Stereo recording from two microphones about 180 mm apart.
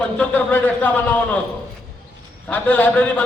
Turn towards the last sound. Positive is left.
turn(degrees=10)  # may be behind; listen again after turning